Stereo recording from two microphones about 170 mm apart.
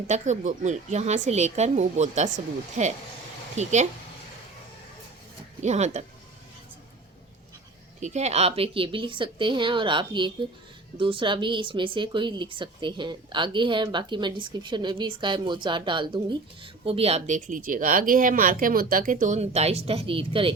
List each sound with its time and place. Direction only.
0.1 s speech: 45° right (ahead or behind)
5.6 s speech: 40° right (ahead or behind)
8.0 s speech: 40° right (ahead or behind)